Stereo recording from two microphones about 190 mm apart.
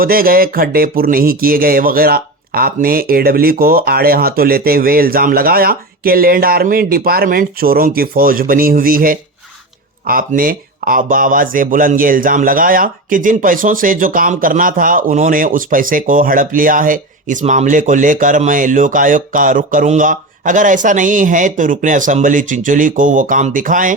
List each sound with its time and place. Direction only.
0.0 s speech: 50° right (ahead or behind)